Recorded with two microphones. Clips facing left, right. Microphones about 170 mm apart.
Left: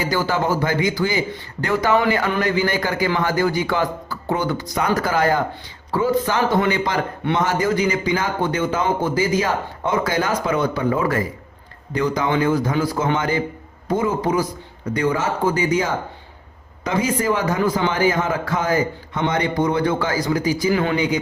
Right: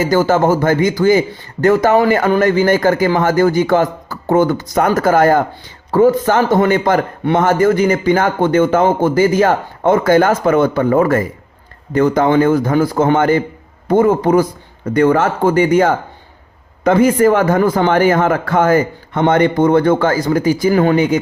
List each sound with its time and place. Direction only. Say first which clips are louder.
0.0 s a man's voice: right 8 dB; 45° right (ahead or behind)